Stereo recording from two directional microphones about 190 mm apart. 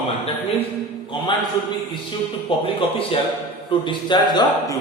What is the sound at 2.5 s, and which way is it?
A man's voice, 25° left (ahead or behind).